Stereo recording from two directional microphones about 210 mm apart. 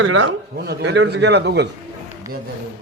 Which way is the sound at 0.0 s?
65° right (ahead or behind).